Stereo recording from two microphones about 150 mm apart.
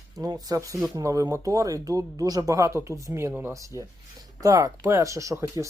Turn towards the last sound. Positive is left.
turn(degrees=-20)  # may be behind; listen again after turning